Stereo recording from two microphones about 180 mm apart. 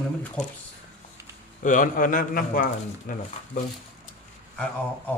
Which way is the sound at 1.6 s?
45° left (ahead or behind).